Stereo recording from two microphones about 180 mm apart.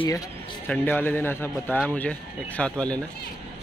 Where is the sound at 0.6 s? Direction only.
10° left (ahead or behind).